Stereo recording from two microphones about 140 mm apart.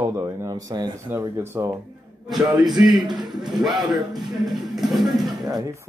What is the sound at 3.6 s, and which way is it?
Speech, centre (ahead or behind).